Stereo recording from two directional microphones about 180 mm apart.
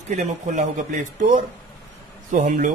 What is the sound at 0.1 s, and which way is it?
A man's voice, 40° right (ahead or behind).